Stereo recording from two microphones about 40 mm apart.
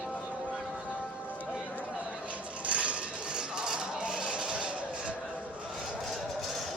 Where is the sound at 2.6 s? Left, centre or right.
Right.